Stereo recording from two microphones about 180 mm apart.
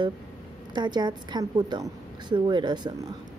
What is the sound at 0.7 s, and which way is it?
A woman's voice, 25° right (ahead or behind).